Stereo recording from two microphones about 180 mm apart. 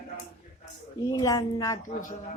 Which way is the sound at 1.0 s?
20° left (ahead or behind).